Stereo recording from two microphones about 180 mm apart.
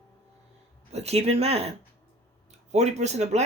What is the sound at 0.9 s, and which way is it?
Speech, 35° right (ahead or behind).